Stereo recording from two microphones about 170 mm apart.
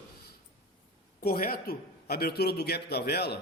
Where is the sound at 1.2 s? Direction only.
60° left (ahead or behind).